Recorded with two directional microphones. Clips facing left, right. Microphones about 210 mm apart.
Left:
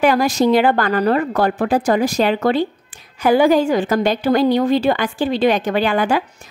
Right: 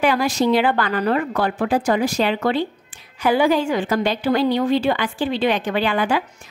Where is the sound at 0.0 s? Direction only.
45° left (ahead or behind).